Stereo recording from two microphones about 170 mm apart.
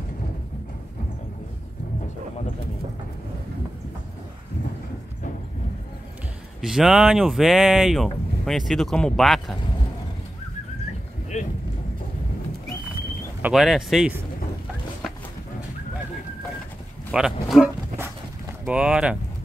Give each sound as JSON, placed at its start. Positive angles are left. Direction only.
{"t": 6.6, "sound": "speech", "side_deg": -5}
{"t": 11.3, "sound": "boat", "side_deg": 40}
{"t": 13.4, "sound": "speech", "side_deg": 0}
{"t": 17.1, "sound": "speech", "side_deg": 0}
{"t": 18.7, "sound": "speech", "side_deg": -5}